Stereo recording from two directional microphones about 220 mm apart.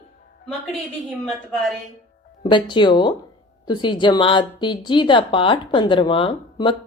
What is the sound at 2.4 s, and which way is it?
Speech, 20° left (ahead or behind).